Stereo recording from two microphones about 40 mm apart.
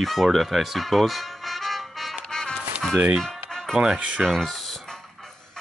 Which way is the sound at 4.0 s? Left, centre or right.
Right.